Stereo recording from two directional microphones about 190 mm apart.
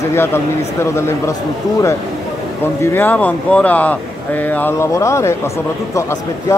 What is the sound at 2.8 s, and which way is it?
Speech, 10° left (ahead or behind).